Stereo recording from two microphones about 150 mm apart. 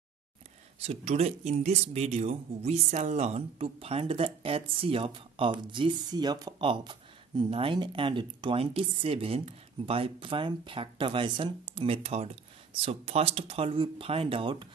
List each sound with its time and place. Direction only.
0.7 s speech: 40° right (ahead or behind)